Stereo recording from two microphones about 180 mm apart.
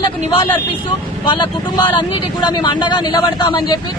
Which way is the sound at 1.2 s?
25° left (ahead or behind).